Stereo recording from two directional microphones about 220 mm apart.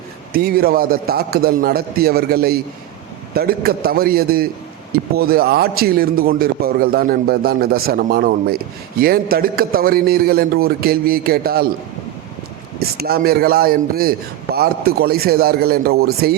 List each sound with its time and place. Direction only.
0.3 s a man's voice: 45° right (ahead or behind)
13.0 s a man's voice: 45° right (ahead or behind)